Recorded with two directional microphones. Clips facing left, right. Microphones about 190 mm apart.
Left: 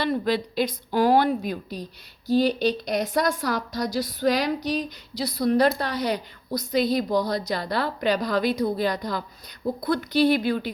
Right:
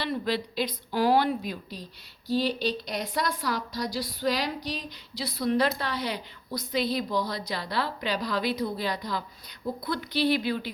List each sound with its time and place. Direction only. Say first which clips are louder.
0.0 s a woman's voice: left 5 dB; 50° left (ahead or behind)